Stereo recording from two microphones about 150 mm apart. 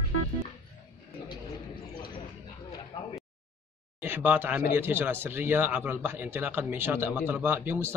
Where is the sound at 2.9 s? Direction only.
30° left (ahead or behind).